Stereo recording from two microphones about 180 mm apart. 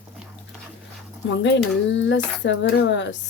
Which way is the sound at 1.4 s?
85° left.